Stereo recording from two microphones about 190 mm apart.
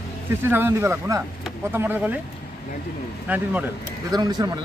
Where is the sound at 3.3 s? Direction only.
10° right (ahead or behind).